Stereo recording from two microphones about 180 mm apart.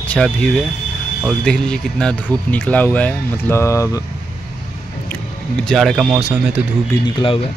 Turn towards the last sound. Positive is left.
turn(degrees=30)  # may be behind; listen again after turning